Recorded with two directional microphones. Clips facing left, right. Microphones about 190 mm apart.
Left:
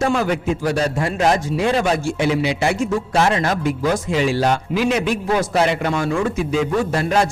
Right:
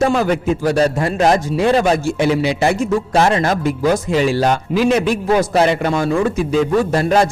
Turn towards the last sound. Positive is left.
turn(degrees=-35)  # may be behind; listen again after turning